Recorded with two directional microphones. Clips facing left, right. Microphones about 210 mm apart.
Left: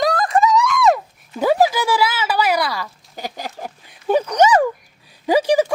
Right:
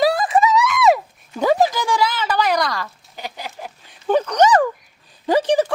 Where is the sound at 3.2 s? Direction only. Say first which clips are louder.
Left 3 dB; 45° left (ahead or behind).